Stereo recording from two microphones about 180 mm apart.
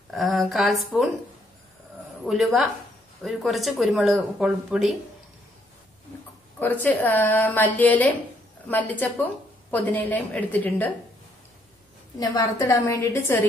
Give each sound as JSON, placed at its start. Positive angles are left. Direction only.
{"t": 0.1, "sound": "speech", "side_deg": 0}
{"t": 2.2, "sound": "speech", "side_deg": 0}
{"t": 6.6, "sound": "a woman's voice", "side_deg": 10}
{"t": 12.2, "sound": "a woman's voice", "side_deg": 20}